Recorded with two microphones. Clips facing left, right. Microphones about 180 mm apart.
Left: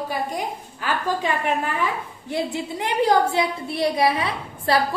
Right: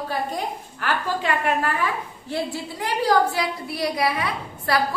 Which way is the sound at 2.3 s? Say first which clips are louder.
Left 2 dB; 20° left (ahead or behind).